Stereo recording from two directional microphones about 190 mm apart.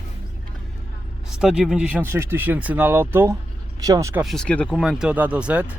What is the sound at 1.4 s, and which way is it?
Speech, 5° right (ahead or behind).